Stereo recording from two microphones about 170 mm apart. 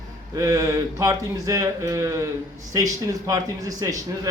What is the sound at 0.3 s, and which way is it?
A man's voice, 20° right (ahead or behind).